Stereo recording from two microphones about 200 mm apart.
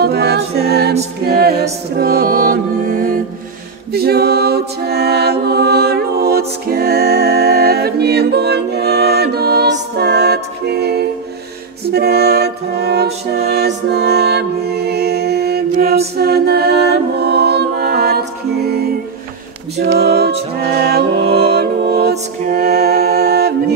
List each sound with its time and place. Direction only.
0.0 s a capella: 55° right (ahead or behind)
1.2 s music: 50° right (ahead or behind)
3.9 s a capella: 50° right (ahead or behind)
11.9 s music: 50° right (ahead or behind)
21.4 s music: 55° right (ahead or behind)